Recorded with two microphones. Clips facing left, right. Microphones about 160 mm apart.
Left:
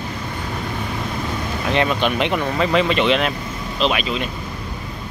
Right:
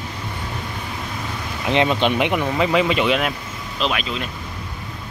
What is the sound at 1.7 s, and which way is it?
Speech, 20° right (ahead or behind).